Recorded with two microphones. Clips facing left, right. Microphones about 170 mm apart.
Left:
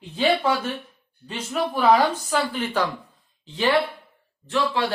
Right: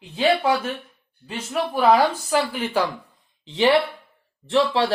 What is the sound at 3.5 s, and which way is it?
Speech, 20° right (ahead or behind).